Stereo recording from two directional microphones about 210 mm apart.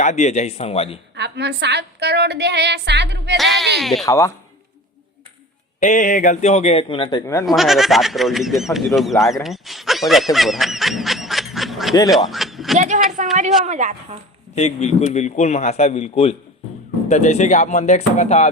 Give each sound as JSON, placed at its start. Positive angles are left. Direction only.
{"t": 0.0, "sound": "speech", "side_deg": 35}
{"t": 1.1, "sound": "a woman's voice", "side_deg": -55}
{"t": 3.3, "sound": "speech", "side_deg": 0}
{"t": 4.0, "sound": "speech", "side_deg": 15}
{"t": 5.8, "sound": "speech", "side_deg": 35}
{"t": 7.4, "sound": "speech", "side_deg": 0}
{"t": 12.3, "sound": "a sound", "side_deg": 0}
{"t": 12.7, "sound": "speech", "side_deg": -35}
{"t": 13.2, "sound": "a sound", "side_deg": -35}
{"t": 13.7, "sound": "speech", "side_deg": -35}
{"t": 14.5, "sound": "speech", "side_deg": 30}